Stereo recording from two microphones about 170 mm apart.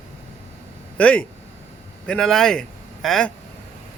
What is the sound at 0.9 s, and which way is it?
A man's voice, 5° left (ahead or behind).